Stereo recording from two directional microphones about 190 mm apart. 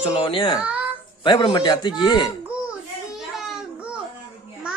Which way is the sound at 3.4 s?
Centre (ahead or behind).